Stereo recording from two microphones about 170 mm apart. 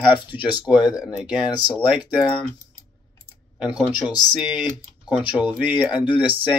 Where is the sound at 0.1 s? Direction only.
10° right (ahead or behind).